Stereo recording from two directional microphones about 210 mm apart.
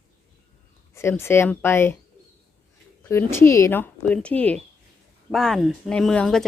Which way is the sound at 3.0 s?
10° left (ahead or behind).